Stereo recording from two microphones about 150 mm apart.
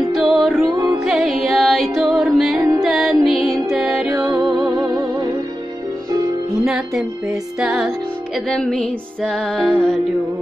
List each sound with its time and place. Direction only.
0.1 s music: centre (ahead or behind)
4.1 s music: 20° right (ahead or behind)
4.4 s music: centre (ahead or behind)
6.6 s speech: centre (ahead or behind)
7.6 s music: centre (ahead or behind)